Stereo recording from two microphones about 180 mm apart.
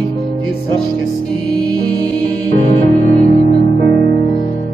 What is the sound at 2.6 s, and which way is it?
Music, 35° left (ahead or behind).